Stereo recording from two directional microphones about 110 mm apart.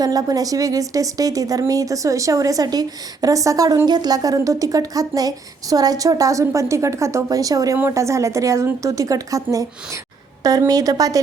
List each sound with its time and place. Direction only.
0.0 s a woman's voice: 35° right (ahead or behind)